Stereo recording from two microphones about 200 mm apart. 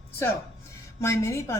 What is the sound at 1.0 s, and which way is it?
Speech, 15° left (ahead or behind).